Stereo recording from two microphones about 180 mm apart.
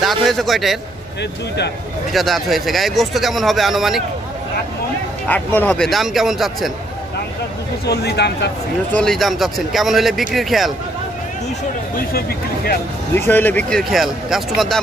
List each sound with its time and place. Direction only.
0.0 s speech: centre (ahead or behind)
2.1 s speech: centre (ahead or behind)
5.3 s speech: 10° left (ahead or behind)
7.8 s speech: 65° left (ahead or behind)
8.9 s speech: centre (ahead or behind)
12.1 s speech: 60° left (ahead or behind)
13.1 s speech: 10° left (ahead or behind)